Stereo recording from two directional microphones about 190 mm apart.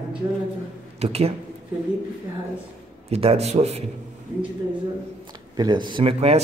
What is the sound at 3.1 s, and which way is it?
Speech, 30° right (ahead or behind).